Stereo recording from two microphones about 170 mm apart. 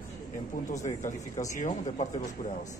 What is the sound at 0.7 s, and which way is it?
Speech, 45° left (ahead or behind).